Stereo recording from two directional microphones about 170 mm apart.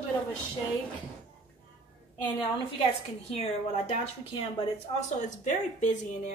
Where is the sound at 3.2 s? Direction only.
35° left (ahead or behind).